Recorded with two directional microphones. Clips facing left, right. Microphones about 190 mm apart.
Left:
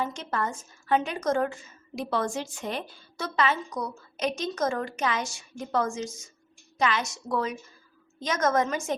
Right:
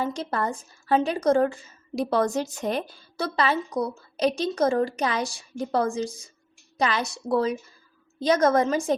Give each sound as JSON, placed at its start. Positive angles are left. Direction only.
{"t": 0.0, "sound": "a woman's voice", "side_deg": -35}